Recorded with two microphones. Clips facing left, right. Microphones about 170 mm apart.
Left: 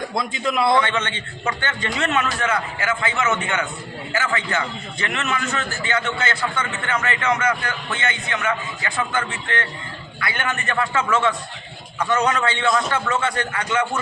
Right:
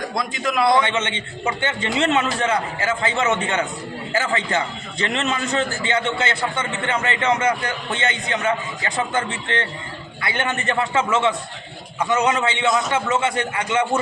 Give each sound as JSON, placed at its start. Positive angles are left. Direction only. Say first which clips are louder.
{"t": 0.8, "sound": "a man's voice", "louder": "right 1 dB", "side_deg": -20}